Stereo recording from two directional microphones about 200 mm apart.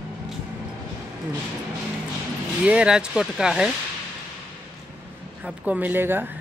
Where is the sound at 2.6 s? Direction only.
5° right (ahead or behind).